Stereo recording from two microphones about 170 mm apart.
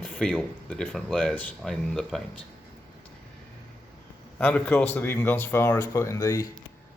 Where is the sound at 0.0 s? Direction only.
5° left (ahead or behind).